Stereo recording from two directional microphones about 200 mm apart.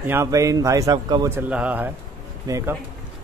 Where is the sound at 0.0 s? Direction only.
10° right (ahead or behind).